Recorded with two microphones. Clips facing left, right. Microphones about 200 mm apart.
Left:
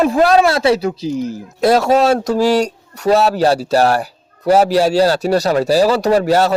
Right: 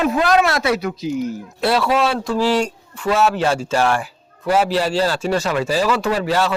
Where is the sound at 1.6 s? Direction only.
45° left (ahead or behind).